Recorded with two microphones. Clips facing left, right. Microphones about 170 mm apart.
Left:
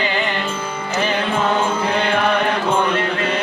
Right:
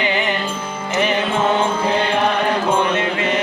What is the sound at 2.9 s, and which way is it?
Mantra, 20° right (ahead or behind).